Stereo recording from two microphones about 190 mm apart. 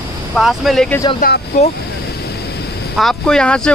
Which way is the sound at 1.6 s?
40° left (ahead or behind).